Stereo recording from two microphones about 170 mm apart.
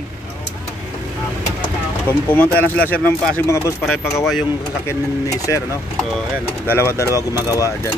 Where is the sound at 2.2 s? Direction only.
10° left (ahead or behind).